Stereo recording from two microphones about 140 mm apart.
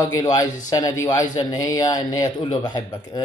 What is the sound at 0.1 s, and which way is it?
A man's voice, 30° left (ahead or behind).